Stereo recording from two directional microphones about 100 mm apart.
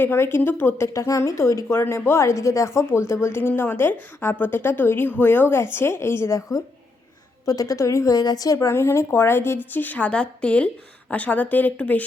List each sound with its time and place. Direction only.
0.0 s speech: 25° left (ahead or behind)
0.9 s a woman's voice: 35° left (ahead or behind); by 12.0 s 15° left (ahead or behind)